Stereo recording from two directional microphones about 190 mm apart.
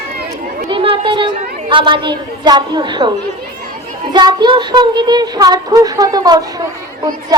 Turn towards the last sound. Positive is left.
turn(degrees=-20)  # may be behind; listen again after turning